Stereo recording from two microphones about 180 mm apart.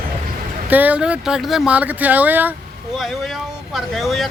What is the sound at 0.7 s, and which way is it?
Speech, 10° right (ahead or behind).